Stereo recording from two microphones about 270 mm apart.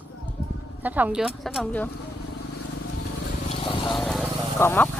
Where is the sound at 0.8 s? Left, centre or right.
Centre.